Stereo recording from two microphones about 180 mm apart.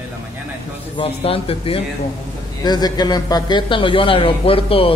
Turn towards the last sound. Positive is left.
turn(degrees=30)  # may be behind; listen again after turning